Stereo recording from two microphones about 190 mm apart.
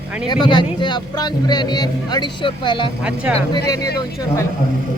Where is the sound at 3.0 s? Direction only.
5° right (ahead or behind).